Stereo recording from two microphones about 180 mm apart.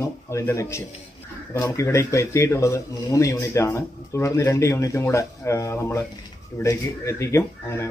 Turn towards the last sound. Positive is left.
turn(degrees=15)  # may be behind; listen again after turning